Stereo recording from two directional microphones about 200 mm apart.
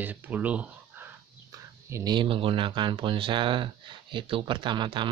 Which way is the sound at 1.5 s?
20° right (ahead or behind).